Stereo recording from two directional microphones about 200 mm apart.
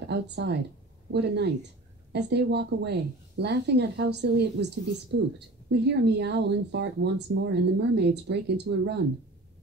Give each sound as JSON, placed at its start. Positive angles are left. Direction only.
{"t": 0.1, "sound": "speech", "side_deg": -55}
{"t": 5.9, "sound": "speech", "side_deg": -60}